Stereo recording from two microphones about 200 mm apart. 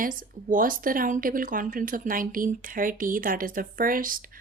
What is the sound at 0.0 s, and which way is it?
Speech, 45° right (ahead or behind).